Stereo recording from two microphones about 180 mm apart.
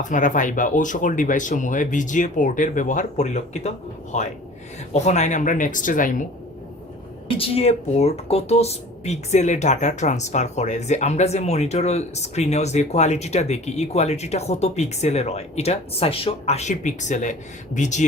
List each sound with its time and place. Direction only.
0.0 s speech: 45° left (ahead or behind)
7.3 s speech: 30° left (ahead or behind)